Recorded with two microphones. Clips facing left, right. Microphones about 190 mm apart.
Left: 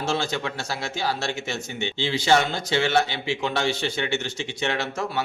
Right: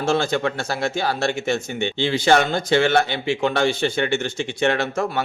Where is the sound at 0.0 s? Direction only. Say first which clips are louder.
Right 6 dB; 55° right (ahead or behind).